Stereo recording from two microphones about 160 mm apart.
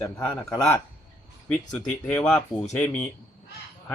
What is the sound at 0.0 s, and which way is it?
Speech, 20° left (ahead or behind).